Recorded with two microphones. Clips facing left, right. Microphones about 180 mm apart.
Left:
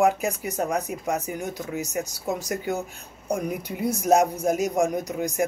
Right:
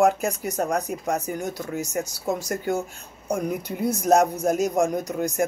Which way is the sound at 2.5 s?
15° left (ahead or behind).